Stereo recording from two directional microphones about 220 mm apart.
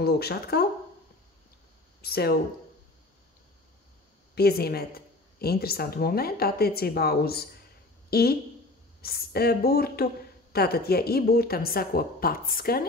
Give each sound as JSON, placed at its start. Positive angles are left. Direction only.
{"t": 0.0, "sound": "a woman's voice", "side_deg": 45}
{"t": 2.0, "sound": "speech", "side_deg": 45}
{"t": 4.4, "sound": "a woman's voice", "side_deg": 45}